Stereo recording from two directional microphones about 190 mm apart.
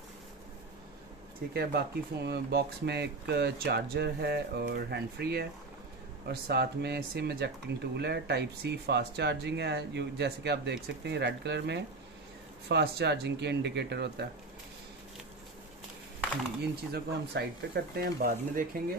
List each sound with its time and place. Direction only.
1.5 s speech: 55° right (ahead or behind)
16.9 s speech: 60° right (ahead or behind)